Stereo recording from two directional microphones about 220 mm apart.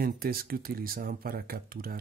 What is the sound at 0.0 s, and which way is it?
Speech, 45° right (ahead or behind).